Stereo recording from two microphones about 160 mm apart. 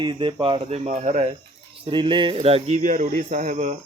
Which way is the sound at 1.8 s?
30° right (ahead or behind).